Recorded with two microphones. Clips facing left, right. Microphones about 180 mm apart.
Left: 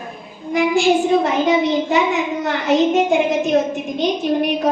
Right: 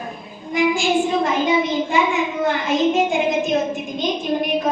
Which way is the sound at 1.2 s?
70° left (ahead or behind).